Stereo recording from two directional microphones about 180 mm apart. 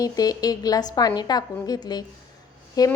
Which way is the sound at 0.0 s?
20° left (ahead or behind).